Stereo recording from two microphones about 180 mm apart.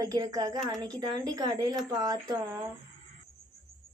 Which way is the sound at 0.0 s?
20° right (ahead or behind).